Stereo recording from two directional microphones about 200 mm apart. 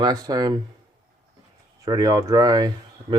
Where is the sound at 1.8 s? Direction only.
20° right (ahead or behind).